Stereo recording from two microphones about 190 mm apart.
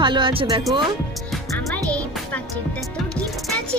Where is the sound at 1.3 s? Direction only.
10° left (ahead or behind).